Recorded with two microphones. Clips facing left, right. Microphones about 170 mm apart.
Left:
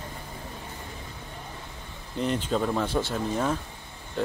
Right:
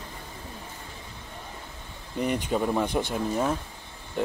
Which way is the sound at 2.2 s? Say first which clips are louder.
Even; 10° right (ahead or behind).